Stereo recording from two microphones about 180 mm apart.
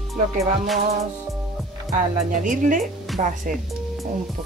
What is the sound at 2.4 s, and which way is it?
Speech, 45° right (ahead or behind).